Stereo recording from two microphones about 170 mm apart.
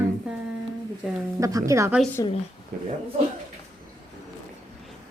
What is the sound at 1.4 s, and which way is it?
Speech, 20° right (ahead or behind).